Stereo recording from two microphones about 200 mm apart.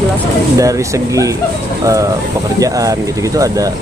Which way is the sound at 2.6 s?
15° right (ahead or behind).